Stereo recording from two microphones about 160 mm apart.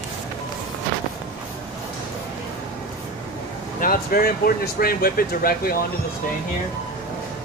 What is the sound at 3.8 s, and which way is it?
Speech, 65° left (ahead or behind).